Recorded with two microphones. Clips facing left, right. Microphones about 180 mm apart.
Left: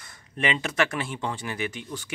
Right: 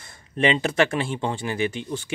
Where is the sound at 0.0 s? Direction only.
30° right (ahead or behind).